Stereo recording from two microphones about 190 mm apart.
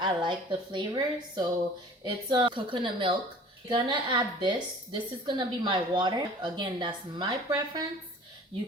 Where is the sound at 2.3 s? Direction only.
25° right (ahead or behind).